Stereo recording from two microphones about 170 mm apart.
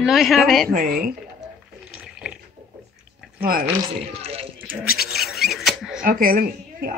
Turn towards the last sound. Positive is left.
turn(degrees=-55)  # may be behind; listen again after turning